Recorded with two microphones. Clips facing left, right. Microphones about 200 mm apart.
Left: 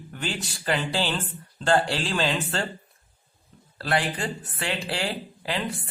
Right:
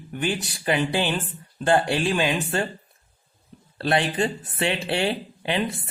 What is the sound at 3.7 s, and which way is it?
Speech, 25° right (ahead or behind).